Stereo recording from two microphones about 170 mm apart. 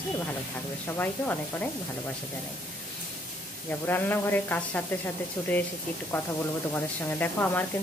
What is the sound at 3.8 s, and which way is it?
Speech, 10° left (ahead or behind).